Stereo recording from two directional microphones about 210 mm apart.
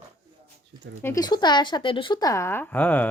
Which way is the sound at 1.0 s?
15° left (ahead or behind).